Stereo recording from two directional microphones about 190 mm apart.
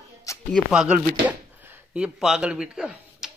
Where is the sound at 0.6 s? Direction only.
5° left (ahead or behind).